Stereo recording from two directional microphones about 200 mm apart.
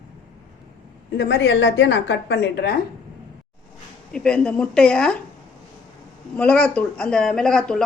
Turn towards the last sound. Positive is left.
turn(degrees=5)  # may be behind; listen again after turning